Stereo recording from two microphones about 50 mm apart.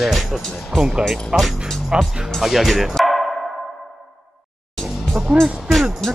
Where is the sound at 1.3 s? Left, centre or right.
Centre.